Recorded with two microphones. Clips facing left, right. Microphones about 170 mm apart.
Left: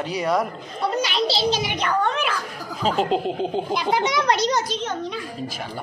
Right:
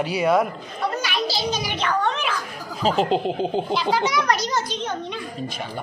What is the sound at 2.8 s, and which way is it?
Speech, centre (ahead or behind).